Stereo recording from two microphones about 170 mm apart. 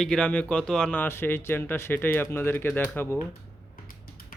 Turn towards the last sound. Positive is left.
turn(degrees=10)  # may be behind; listen again after turning